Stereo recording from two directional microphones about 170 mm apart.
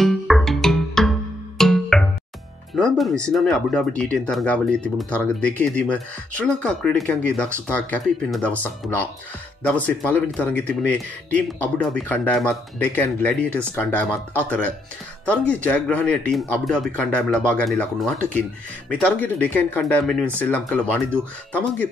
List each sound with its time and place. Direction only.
0.0 s music: centre (ahead or behind)
2.7 s speech: centre (ahead or behind)
15.2 s speech: 10° left (ahead or behind)